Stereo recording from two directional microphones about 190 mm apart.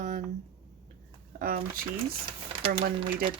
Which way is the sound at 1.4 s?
50° right (ahead or behind).